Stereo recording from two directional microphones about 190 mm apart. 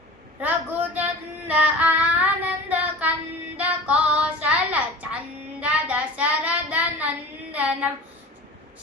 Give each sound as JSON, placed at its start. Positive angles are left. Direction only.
{"t": 0.4, "sound": "speech", "side_deg": -10}
{"t": 1.5, "sound": "child singing", "side_deg": -5}
{"t": 7.5, "sound": "a sound", "side_deg": -5}